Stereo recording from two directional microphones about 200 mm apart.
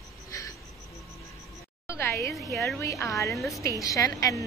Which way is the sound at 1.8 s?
15° left (ahead or behind).